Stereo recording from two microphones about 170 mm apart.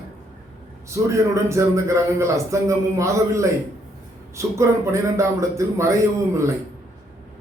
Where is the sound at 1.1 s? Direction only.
15° right (ahead or behind).